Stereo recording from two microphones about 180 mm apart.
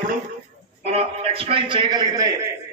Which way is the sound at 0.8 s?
35° right (ahead or behind).